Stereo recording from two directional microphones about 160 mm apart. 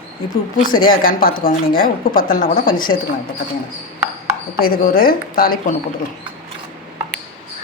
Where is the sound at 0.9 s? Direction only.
65° left (ahead or behind).